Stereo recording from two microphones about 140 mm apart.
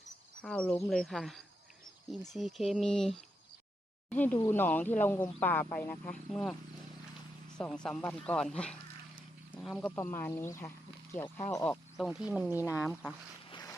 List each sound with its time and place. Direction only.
0.4 s speech: 5° left (ahead or behind)
7.6 s speech: 5° left (ahead or behind)
9.9 s speech: 20° left (ahead or behind)
11.6 s speech: 5° left (ahead or behind); by 12.7 s 15° right (ahead or behind)
13.5 s boat: 30° left (ahead or behind)